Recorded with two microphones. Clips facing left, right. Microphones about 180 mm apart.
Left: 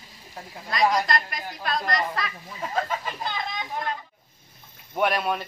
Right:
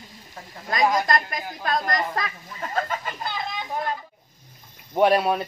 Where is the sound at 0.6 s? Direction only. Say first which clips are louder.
Right 1 dB; 45° right (ahead or behind).